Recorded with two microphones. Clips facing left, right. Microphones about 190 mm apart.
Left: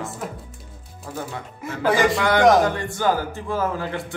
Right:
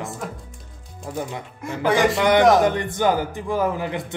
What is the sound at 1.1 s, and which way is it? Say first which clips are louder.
Speech: right 3 dB; 15° right (ahead or behind).